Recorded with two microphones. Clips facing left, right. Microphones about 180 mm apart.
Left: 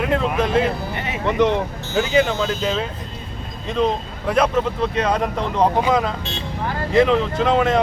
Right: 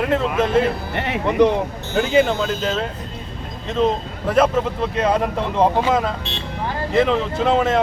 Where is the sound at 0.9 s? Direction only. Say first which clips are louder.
Right 3 dB; 65° right (ahead or behind).